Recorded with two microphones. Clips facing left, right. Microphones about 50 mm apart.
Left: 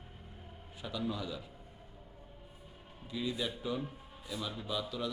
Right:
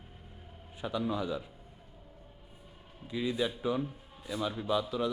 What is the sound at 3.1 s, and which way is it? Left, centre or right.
A man's voice, centre.